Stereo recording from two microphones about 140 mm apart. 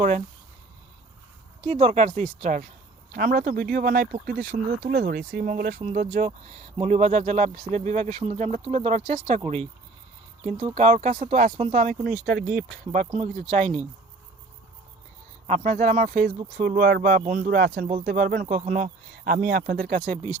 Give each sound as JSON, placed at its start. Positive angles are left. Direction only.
{"t": 1.6, "sound": "speech", "side_deg": -45}
{"t": 3.1, "sound": "speech", "side_deg": -85}
{"t": 5.8, "sound": "speech", "side_deg": -60}
{"t": 6.8, "sound": "speech", "side_deg": -50}
{"t": 10.8, "sound": "speech", "side_deg": -55}
{"t": 11.5, "sound": "speech", "side_deg": -50}
{"t": 12.5, "sound": "speech", "side_deg": -65}
{"t": 13.1, "sound": "speech", "side_deg": -55}
{"t": 15.4, "sound": "speech", "side_deg": -55}
{"t": 16.6, "sound": "speech", "side_deg": -85}